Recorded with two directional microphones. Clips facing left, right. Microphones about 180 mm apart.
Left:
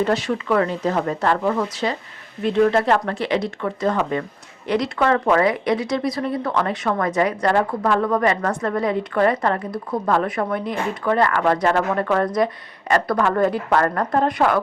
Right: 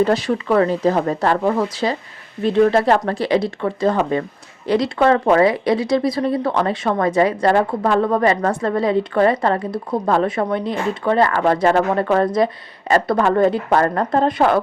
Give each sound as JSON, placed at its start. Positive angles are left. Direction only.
{"t": 0.0, "sound": "speech", "side_deg": -35}